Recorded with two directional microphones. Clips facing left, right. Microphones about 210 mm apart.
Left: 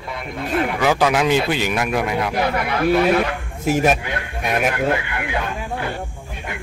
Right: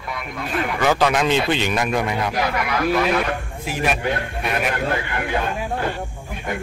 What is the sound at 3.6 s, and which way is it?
Speech, 45° left (ahead or behind).